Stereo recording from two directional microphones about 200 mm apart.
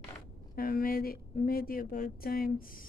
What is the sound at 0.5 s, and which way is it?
Speech, 45° left (ahead or behind).